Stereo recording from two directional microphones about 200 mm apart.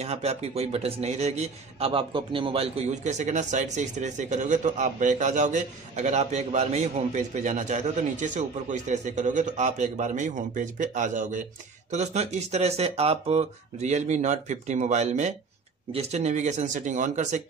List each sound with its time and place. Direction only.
0.0 s a man's voice: 30° right (ahead or behind)